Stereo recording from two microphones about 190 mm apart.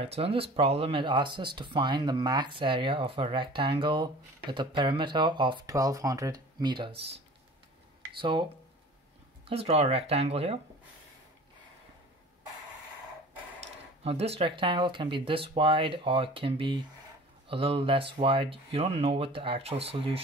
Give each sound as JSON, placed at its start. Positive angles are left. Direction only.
{"t": 0.0, "sound": "speech", "side_deg": -30}
{"t": 8.2, "sound": "speech", "side_deg": -25}
{"t": 9.5, "sound": "speech", "side_deg": -30}
{"t": 13.6, "sound": "speech", "side_deg": -30}